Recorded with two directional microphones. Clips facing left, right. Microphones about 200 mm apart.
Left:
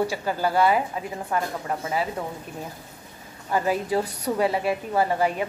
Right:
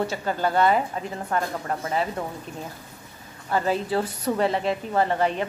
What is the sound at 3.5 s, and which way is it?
A woman's voice, 10° left (ahead or behind).